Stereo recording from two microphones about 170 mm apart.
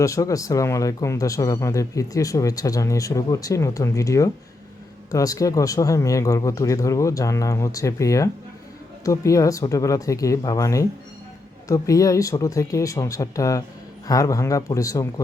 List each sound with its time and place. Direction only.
0.0 s speech: 20° left (ahead or behind)